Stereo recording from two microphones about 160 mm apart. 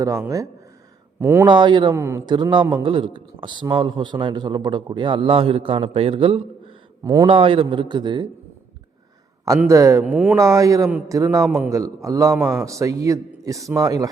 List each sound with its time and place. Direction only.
1.2 s speech: 15° right (ahead or behind)
1.5 s a man's voice: 30° right (ahead or behind)
2.0 s speech: 15° right (ahead or behind)
2.3 s a man's voice: 30° right (ahead or behind)
7.0 s a man's voice: 20° right (ahead or behind)
7.3 s a man's voice: 35° right (ahead or behind)
9.6 s a man's voice: 20° right (ahead or behind)
10.0 s a man's voice: 10° right (ahead or behind)
11.4 s a man's voice: centre (ahead or behind)
11.7 s a man's voice: 20° right (ahead or behind)